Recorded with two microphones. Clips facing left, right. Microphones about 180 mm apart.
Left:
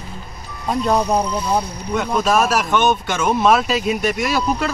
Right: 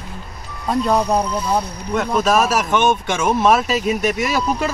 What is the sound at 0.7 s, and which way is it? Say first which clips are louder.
Speech: even; centre (ahead or behind).